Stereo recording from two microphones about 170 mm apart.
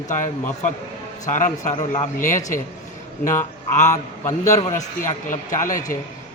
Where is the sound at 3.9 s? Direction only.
15° left (ahead or behind).